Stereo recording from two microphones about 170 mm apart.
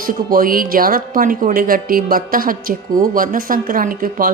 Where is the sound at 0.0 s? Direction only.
55° right (ahead or behind).